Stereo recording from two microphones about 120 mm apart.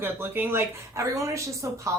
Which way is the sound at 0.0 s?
20° right (ahead or behind).